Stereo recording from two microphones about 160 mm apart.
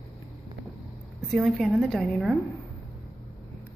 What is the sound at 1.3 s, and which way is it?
A woman's voice, centre (ahead or behind).